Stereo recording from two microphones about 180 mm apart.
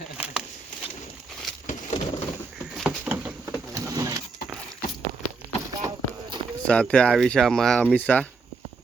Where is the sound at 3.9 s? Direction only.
20° right (ahead or behind).